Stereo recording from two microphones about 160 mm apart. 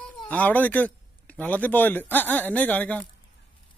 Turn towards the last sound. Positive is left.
turn(degrees=10)  # may be behind; listen again after turning